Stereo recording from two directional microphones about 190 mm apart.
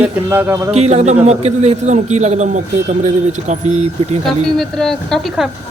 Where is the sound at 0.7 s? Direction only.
35° right (ahead or behind).